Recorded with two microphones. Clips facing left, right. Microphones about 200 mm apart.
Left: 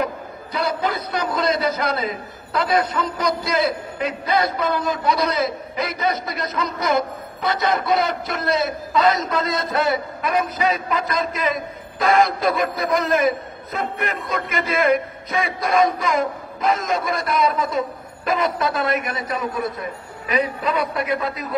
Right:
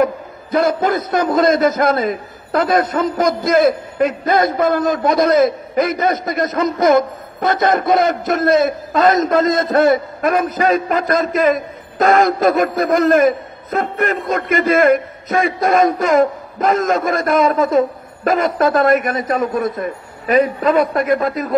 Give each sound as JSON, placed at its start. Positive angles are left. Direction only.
{"t": 0.0, "sound": "a man's voice", "side_deg": -50}